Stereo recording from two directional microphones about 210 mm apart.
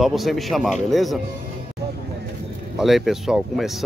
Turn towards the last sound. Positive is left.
turn(degrees=0)  # may be behind; listen again after turning